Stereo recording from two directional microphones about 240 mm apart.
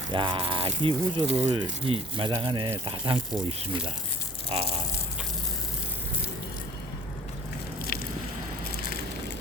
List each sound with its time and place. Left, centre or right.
0.1 s speech: centre
4.5 s speech: right
7.9 s boat: left